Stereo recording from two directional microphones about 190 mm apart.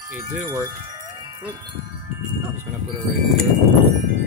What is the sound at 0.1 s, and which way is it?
Speech, 15° right (ahead or behind).